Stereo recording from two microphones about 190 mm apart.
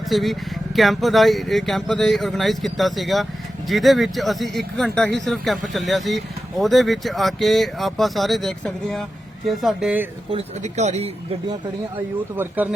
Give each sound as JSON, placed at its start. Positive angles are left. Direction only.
{"t": 0.1, "sound": "speech", "side_deg": 0}
{"t": 10.3, "sound": "speech", "side_deg": -35}